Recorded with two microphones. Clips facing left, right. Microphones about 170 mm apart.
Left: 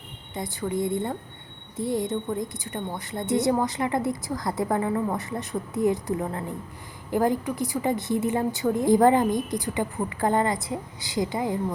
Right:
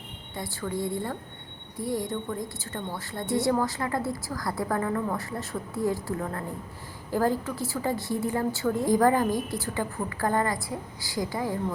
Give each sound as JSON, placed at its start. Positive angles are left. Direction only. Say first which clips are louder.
{"t": 0.3, "sound": "a woman's voice", "louder": "left 4 dB", "side_deg": 20}